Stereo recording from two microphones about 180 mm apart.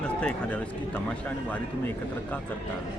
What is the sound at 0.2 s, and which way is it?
Speech, 5° left (ahead or behind).